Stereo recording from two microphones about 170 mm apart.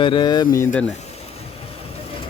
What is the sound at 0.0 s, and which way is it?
Speech, 25° left (ahead or behind).